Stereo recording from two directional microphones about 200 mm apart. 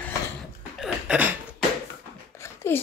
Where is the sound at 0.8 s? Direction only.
5° right (ahead or behind).